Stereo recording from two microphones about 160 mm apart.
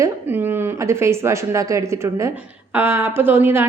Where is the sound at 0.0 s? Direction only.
15° right (ahead or behind).